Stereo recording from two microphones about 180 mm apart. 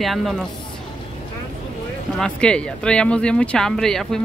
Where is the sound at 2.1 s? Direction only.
5° left (ahead or behind).